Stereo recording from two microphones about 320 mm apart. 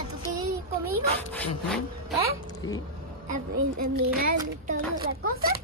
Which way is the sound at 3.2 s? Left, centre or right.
Right.